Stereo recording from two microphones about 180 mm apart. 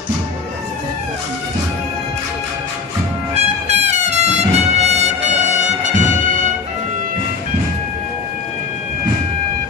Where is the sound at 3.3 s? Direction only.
35° right (ahead or behind).